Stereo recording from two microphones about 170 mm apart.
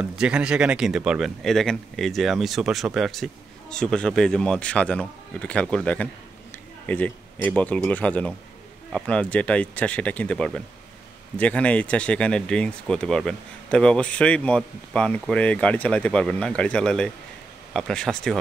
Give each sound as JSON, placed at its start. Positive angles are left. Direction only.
{"t": 0.0, "sound": "speech", "side_deg": -5}